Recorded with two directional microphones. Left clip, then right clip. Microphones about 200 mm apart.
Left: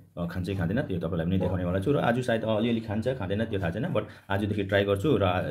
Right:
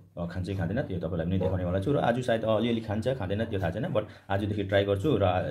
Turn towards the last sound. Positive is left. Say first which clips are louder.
# left 1 dB
turn(degrees=10)  # may be behind; listen again after turning